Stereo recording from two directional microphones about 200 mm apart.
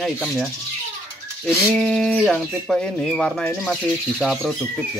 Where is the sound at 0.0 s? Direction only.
Centre (ahead or behind).